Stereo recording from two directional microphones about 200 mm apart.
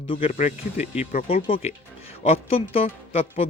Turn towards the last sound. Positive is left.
turn(degrees=30)  # may be behind; listen again after turning